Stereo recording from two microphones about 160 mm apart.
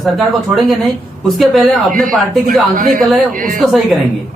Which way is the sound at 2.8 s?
60° right (ahead or behind).